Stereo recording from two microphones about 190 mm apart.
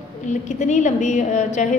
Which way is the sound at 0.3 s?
40° left (ahead or behind).